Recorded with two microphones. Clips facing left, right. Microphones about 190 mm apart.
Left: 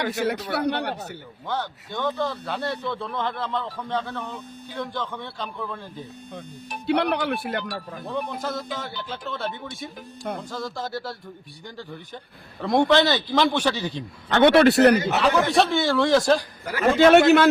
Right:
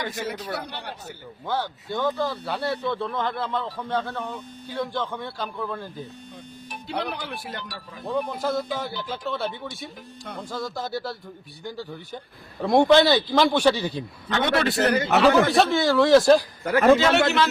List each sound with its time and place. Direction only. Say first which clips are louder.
0.0 s a man's voice: left 5 dB; 70° left (ahead or behind)
1.5 s speech: right 2 dB; 10° right (ahead or behind)
6.8 s speech: left 8 dB; 70° left (ahead or behind)
8.4 s speech: right 4 dB; 10° right (ahead or behind)
14.3 s speech: left 8 dB; 65° left (ahead or behind)
15.2 s speech: right 2 dB; centre (ahead or behind)
17.0 s a man's voice: left 6 dB; 55° left (ahead or behind)